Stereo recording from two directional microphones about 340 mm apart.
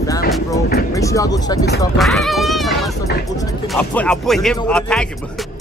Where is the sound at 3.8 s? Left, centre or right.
Centre.